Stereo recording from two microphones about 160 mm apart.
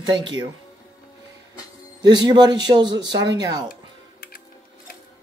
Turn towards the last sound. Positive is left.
turn(degrees=-25)  # may be behind; listen again after turning